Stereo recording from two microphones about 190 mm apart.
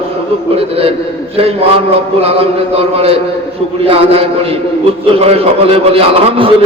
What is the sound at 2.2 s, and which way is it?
A man's voice, 30° right (ahead or behind).